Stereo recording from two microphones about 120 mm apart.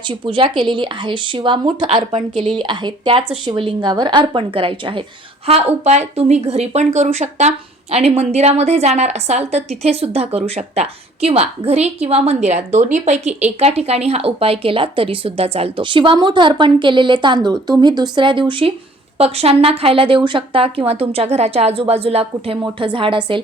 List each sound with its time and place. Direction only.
0.1 s speech: 45° right (ahead or behind)
5.5 s speech: 55° right (ahead or behind)
19.2 s speech: 55° right (ahead or behind)